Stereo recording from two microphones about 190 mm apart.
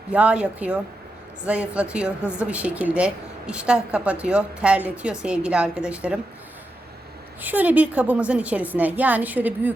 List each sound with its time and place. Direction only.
0.1 s a woman's voice: 5° right (ahead or behind)
7.4 s a woman's voice: 10° right (ahead or behind)